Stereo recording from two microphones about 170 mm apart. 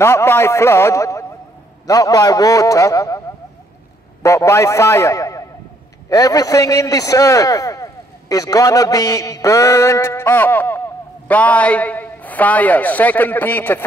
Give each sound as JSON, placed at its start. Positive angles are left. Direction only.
{"t": 0.0, "sound": "a man's voice", "side_deg": 15}
{"t": 4.2, "sound": "a man's voice", "side_deg": 20}